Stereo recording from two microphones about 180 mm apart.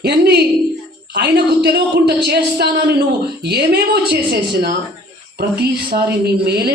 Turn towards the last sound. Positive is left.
turn(degrees=-60)  # may be behind; listen again after turning